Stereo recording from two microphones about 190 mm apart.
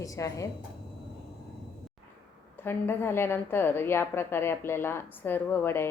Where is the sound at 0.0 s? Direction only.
15° left (ahead or behind).